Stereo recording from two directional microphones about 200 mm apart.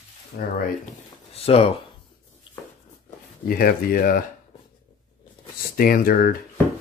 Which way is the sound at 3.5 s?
45° left (ahead or behind).